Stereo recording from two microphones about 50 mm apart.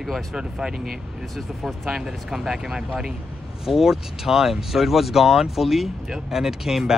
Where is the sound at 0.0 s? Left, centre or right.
Centre.